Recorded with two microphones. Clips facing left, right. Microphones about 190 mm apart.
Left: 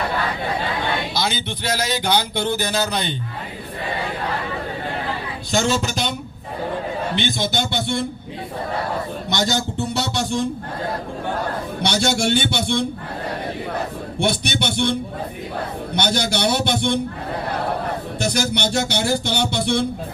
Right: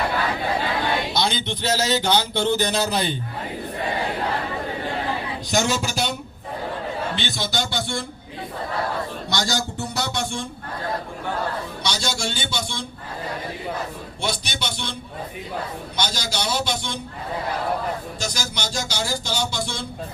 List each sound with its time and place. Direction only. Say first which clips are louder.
1.1 s speech: even; 5° left (ahead or behind)
5.5 s speech: left 3 dB; 15° right (ahead or behind)
7.2 s a man's voice: left 4 dB; 20° left (ahead or behind)
9.3 s a man's voice: left 4 dB; 20° left (ahead or behind)
11.8 s speech: left 8 dB; 60° left (ahead or behind)
14.2 s speech: left 7 dB; 60° left (ahead or behind)
16.0 s speech: left 7 dB; 60° left (ahead or behind)
18.2 s speech: left 8 dB; 60° left (ahead or behind)